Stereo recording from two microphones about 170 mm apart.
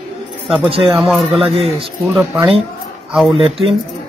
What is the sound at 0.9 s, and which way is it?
Speech, centre (ahead or behind).